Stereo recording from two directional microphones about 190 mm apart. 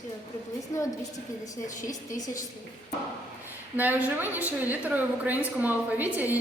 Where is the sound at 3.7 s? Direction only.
10° right (ahead or behind).